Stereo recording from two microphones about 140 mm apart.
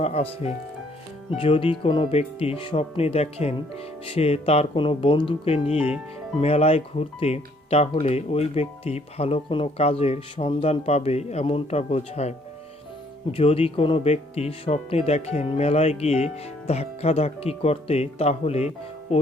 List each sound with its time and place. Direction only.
0.0 s speech: 50° left (ahead or behind)
13.3 s speech: 45° left (ahead or behind)